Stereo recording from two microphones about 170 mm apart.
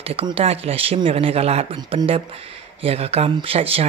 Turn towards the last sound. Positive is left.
turn(degrees=-35)  # may be behind; listen again after turning